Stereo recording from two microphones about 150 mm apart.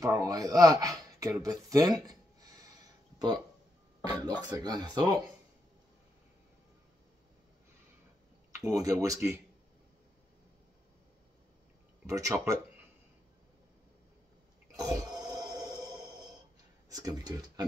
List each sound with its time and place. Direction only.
0.0 s speech: 25° right (ahead or behind)
4.4 s speech: 30° right (ahead or behind)
8.5 s speech: 20° right (ahead or behind)
12.1 s speech: 20° right (ahead or behind)
14.8 s a sound: 25° right (ahead or behind)
16.9 s speech: 25° right (ahead or behind)